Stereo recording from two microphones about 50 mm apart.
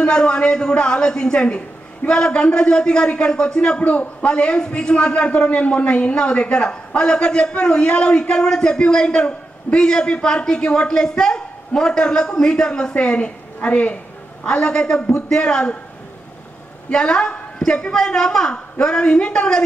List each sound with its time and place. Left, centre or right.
0.0 s a man's voice: centre
16.9 s a man's voice: centre